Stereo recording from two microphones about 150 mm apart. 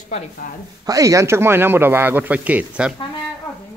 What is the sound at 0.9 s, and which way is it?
Speech, 20° right (ahead or behind).